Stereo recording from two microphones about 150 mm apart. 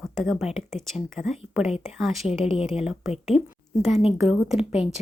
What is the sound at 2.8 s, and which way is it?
Speech, 5° right (ahead or behind).